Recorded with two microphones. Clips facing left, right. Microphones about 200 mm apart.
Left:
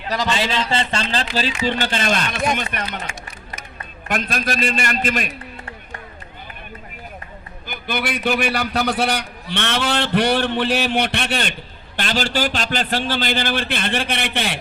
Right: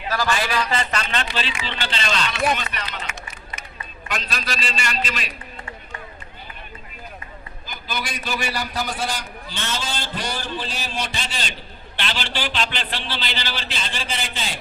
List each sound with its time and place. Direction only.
0.1 s a man's voice: 20° left (ahead or behind); by 5.3 s 50° left (ahead or behind)
7.7 s a man's voice: 60° left (ahead or behind)
11.9 s a man's voice: 45° left (ahead or behind); by 14.6 s 65° left (ahead or behind)